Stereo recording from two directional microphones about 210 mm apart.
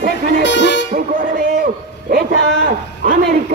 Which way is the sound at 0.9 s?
40° right (ahead or behind).